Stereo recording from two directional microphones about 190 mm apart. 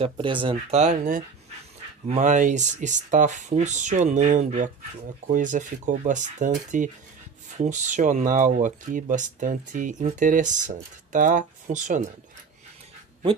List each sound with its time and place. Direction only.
0.0 s speech: 25° right (ahead or behind)